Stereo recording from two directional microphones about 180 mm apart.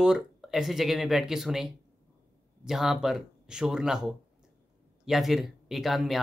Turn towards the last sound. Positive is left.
turn(degrees=0)  # may be behind; listen again after turning